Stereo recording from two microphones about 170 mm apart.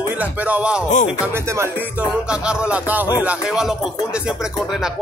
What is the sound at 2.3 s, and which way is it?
Music, 5° right (ahead or behind).